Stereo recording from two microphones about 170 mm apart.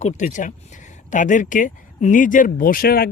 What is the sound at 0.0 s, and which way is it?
Speech, 45° left (ahead or behind).